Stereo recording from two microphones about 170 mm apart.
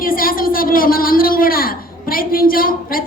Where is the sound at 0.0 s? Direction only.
55° left (ahead or behind).